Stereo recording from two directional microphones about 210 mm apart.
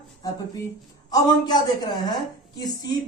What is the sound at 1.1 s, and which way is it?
Speech, 20° left (ahead or behind).